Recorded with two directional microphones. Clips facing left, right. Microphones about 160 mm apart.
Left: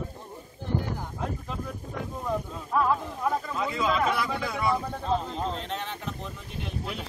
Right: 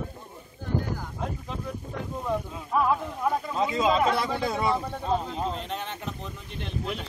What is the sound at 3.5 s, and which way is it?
Speech, 30° right (ahead or behind).